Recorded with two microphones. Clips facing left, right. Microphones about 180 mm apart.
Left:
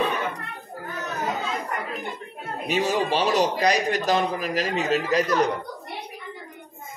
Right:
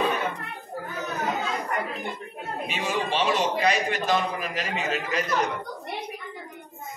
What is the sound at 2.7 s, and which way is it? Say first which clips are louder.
A man's voice: left 6 dB; 40° left (ahead or behind).